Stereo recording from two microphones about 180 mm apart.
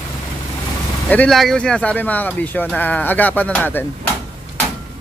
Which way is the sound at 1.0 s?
5° left (ahead or behind).